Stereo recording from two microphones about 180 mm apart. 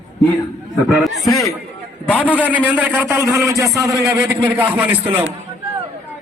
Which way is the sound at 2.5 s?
10° right (ahead or behind).